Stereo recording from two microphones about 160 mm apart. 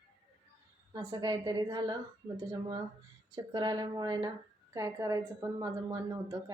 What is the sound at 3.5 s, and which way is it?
A woman's voice, 25° right (ahead or behind).